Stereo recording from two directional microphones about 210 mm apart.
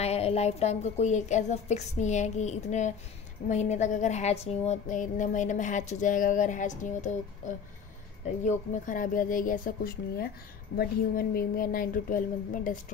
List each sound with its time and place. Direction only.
0.0 s speech: 30° left (ahead or behind)
8.5 s a woman's voice: 40° left (ahead or behind)